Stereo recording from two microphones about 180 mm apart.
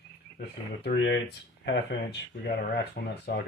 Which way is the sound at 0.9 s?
75° left (ahead or behind).